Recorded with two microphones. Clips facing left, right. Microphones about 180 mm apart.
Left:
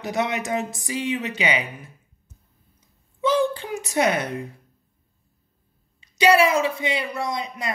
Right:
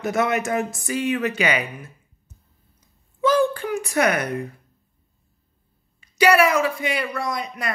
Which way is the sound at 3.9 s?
25° left (ahead or behind).